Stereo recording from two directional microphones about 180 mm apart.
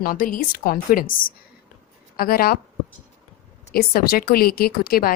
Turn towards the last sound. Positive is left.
turn(degrees=55)  # may be behind; listen again after turning